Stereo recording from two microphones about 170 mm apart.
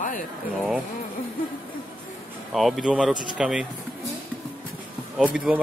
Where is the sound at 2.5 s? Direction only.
Centre (ahead or behind).